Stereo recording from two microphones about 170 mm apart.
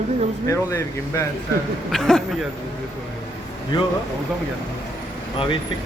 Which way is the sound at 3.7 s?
25° left (ahead or behind).